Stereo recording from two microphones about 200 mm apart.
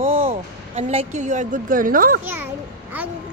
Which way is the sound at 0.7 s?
30° right (ahead or behind).